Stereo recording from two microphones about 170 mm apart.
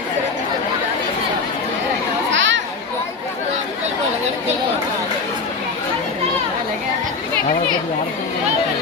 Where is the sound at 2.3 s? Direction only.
90° right.